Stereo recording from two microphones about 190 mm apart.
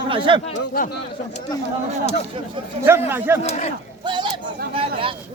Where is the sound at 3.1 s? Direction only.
10° right (ahead or behind).